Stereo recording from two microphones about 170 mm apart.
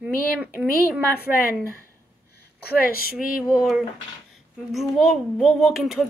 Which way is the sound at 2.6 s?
60° left (ahead or behind).